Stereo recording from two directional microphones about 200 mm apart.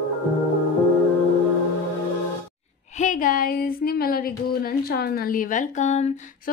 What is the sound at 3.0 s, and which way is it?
Speech, 40° left (ahead or behind).